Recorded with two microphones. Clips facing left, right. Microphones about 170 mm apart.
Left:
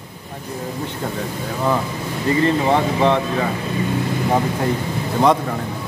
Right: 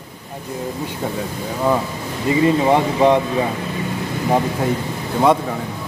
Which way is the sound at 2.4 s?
10° right (ahead or behind).